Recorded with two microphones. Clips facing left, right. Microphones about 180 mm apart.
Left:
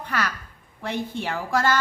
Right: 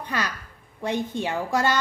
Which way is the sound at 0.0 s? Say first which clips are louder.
Left 1 dB; 15° right (ahead or behind).